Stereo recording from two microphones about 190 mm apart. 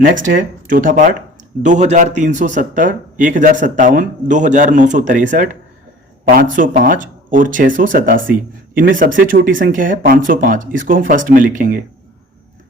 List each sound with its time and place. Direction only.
0.0 s a man's voice: 45° right (ahead or behind)